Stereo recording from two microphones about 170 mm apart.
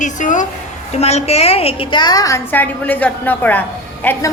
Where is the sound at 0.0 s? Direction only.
50° left (ahead or behind).